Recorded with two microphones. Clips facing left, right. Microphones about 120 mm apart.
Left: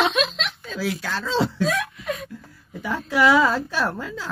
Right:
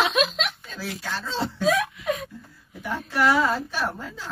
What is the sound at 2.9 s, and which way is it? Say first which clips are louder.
Speech: left 4 dB; 90° left.